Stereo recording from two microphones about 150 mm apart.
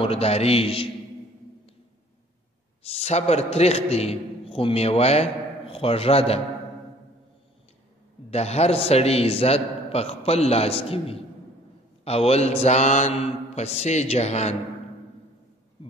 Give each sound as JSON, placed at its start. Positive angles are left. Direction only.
{"t": 0.0, "sound": "a man's voice", "side_deg": 40}
{"t": 2.9, "sound": "a man's voice", "side_deg": 45}
{"t": 8.3, "sound": "a man's voice", "side_deg": 45}